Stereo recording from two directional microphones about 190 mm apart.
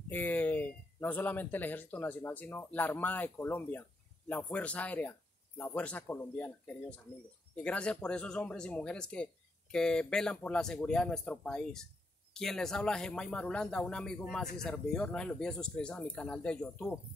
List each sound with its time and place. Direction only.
0.1 s speech: 10° left (ahead or behind)